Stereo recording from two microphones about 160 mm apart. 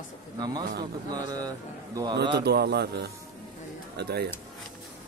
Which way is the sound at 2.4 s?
85° right.